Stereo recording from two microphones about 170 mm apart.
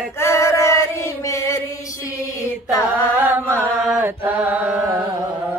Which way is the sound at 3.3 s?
15° right (ahead or behind).